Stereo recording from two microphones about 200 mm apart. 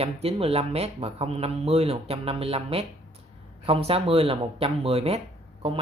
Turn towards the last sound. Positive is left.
turn(degrees=-30)  # may be behind; listen again after turning